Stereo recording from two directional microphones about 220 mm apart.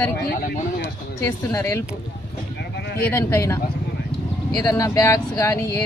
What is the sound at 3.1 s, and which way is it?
Speech, 10° left (ahead or behind).